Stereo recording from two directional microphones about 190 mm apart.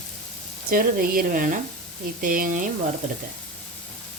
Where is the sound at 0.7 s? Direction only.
50° right (ahead or behind).